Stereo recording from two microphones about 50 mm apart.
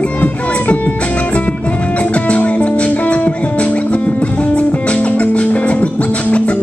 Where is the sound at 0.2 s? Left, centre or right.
Left.